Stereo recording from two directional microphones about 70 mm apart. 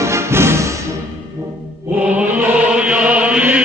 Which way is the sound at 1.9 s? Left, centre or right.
Centre.